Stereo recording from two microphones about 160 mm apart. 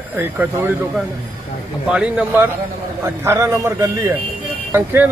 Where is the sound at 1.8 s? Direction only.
5° right (ahead or behind).